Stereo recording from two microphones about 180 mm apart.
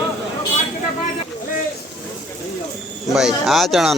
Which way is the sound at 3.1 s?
Centre (ahead or behind).